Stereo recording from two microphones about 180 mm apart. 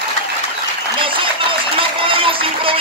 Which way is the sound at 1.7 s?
30° right (ahead or behind).